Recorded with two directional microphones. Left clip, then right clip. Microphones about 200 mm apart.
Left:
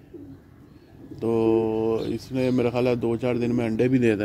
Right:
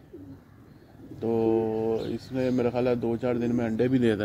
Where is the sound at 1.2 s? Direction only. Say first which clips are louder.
Left 3 dB; 20° left (ahead or behind).